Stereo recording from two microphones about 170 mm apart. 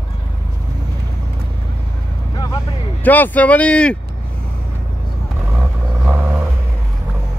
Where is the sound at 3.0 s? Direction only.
10° left (ahead or behind).